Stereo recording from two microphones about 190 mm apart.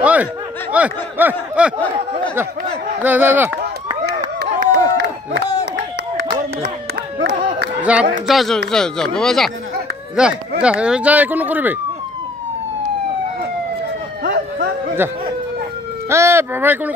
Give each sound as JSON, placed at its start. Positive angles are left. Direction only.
{"t": 0.0, "sound": "speech", "side_deg": -5}
{"t": 3.0, "sound": "speech", "side_deg": -10}
{"t": 4.4, "sound": "a sound", "side_deg": -55}
{"t": 7.8, "sound": "a man's voice", "side_deg": -5}
{"t": 16.1, "sound": "speech", "side_deg": -15}